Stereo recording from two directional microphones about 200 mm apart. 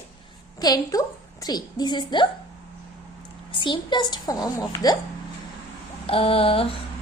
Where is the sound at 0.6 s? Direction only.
20° left (ahead or behind).